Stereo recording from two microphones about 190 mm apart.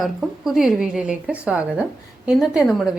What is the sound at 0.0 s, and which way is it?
A woman's voice, centre (ahead or behind).